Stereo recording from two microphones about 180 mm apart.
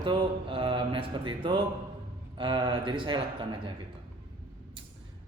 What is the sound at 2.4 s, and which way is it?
Speech, 25° right (ahead or behind).